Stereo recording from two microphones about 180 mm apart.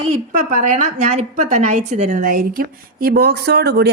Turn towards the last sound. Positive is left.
turn(degrees=-65)  # may be behind; listen again after turning